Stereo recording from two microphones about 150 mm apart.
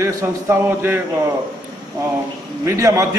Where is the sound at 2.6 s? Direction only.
20° right (ahead or behind).